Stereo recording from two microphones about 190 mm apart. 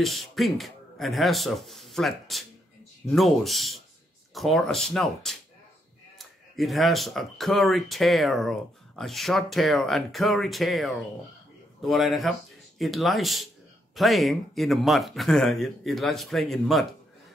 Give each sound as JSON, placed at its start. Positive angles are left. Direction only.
{"t": 0.0, "sound": "speech", "side_deg": 0}